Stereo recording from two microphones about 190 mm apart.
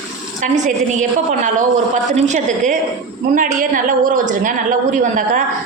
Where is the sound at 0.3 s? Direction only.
40° right (ahead or behind).